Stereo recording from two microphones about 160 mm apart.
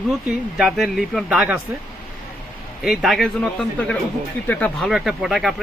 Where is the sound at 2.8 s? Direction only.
Centre (ahead or behind).